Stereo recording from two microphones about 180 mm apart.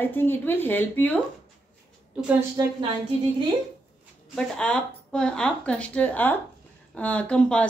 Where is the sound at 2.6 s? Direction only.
25° right (ahead or behind).